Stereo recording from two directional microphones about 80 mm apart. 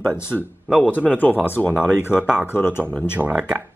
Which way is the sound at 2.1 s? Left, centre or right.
Centre.